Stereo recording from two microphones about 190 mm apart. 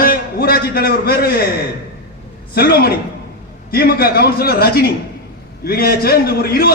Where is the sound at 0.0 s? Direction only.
50° left (ahead or behind).